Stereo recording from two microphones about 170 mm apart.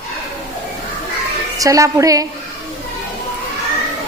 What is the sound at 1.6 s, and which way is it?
Speech, 20° right (ahead or behind).